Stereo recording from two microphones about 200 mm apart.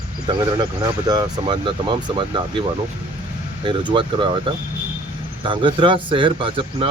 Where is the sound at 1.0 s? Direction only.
20° right (ahead or behind).